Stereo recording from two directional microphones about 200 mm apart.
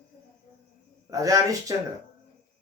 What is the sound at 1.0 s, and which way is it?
Speech, 15° right (ahead or behind).